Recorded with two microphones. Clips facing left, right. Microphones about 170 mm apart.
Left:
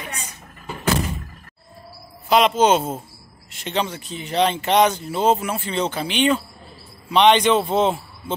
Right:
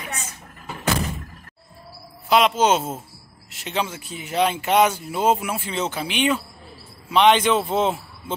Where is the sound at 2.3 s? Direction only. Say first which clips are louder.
Left 2 dB; centre (ahead or behind).